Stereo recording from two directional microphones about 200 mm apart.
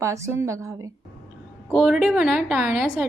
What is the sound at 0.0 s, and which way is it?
Speech, 15° right (ahead or behind).